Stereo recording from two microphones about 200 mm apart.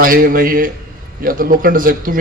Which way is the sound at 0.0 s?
45° right (ahead or behind).